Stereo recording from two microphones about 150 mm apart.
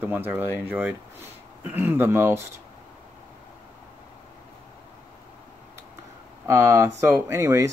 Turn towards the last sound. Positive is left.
turn(degrees=-20)  # may be behind; listen again after turning